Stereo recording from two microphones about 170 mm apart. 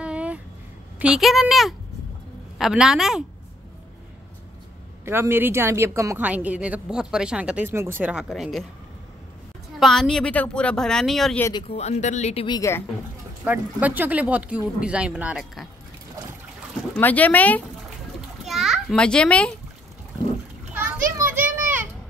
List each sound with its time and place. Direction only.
0.0 s vehicle: 5° right (ahead or behind)
0.9 s a woman's voice: 5° right (ahead or behind)
5.0 s speech: 15° right (ahead or behind)
9.8 s a woman's voice: centre (ahead or behind)
11.6 s speech: 40° left (ahead or behind)
12.4 s a woman's voice: 20° left (ahead or behind)
13.4 s speech: 10° right (ahead or behind)
16.9 s speech: 10° left (ahead or behind)
18.4 s a child's voice: centre (ahead or behind)
20.7 s children playing: 10° right (ahead or behind)